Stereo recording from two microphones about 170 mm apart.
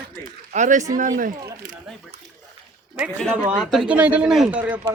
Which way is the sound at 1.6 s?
50° right (ahead or behind).